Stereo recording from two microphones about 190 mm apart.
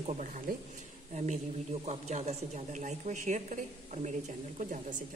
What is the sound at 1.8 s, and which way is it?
Speech, 35° right (ahead or behind).